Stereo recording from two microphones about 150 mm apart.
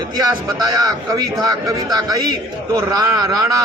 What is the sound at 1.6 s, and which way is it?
A man's voice, 25° right (ahead or behind).